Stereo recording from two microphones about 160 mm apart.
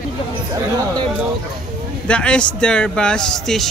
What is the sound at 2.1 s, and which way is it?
Speech, 5° left (ahead or behind).